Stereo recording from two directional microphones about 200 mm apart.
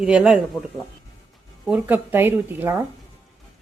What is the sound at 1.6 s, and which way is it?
Speech, 10° right (ahead or behind).